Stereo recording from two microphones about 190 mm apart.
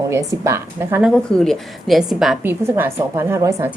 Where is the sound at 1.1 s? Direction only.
5° left (ahead or behind).